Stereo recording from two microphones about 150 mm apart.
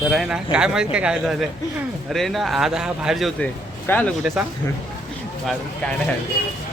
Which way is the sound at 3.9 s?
10° left (ahead or behind).